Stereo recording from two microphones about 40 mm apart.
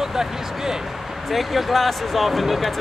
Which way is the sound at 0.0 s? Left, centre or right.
Centre.